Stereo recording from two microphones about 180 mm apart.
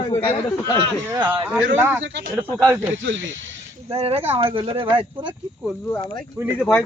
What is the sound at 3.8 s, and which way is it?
Speech, 35° right (ahead or behind).